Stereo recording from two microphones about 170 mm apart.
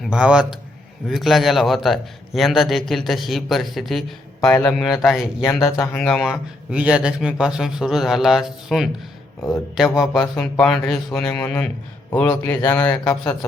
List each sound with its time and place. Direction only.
0.0 s a man's voice: 5° right (ahead or behind)